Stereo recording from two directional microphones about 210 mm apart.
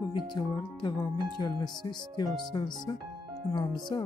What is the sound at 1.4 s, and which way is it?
Speech, 20° left (ahead or behind).